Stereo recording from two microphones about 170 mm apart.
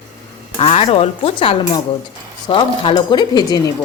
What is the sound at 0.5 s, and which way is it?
Speech, 35° left (ahead or behind).